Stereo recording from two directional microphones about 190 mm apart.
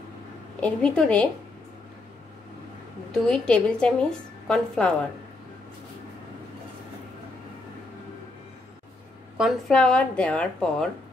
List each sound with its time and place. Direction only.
0.6 s a woman's voice: 5° left (ahead or behind)
3.1 s a woman's voice: 5° left (ahead or behind)
9.4 s a woman's voice: 5° left (ahead or behind)